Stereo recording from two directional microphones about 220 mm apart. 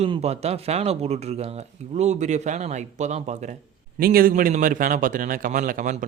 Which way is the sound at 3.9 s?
40° right (ahead or behind).